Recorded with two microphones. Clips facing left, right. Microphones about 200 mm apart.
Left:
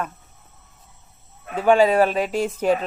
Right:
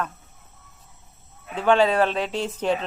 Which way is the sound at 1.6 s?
10° left (ahead or behind).